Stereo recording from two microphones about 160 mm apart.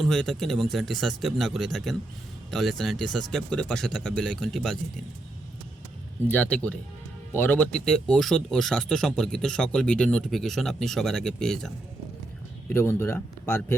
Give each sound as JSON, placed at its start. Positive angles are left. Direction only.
{"t": 0.0, "sound": "speech", "side_deg": 0}
{"t": 6.2, "sound": "speech", "side_deg": 10}
{"t": 12.6, "sound": "speech", "side_deg": 15}